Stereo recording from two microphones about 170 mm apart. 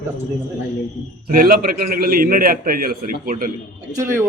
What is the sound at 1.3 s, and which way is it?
A man's voice, 55° right (ahead or behind).